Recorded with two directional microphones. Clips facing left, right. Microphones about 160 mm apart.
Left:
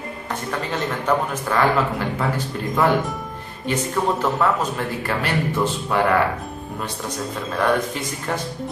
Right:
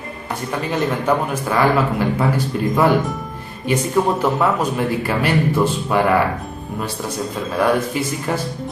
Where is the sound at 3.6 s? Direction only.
10° right (ahead or behind).